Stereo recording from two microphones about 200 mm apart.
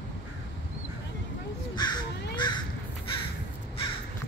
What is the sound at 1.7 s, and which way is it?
Crow, 20° left (ahead or behind).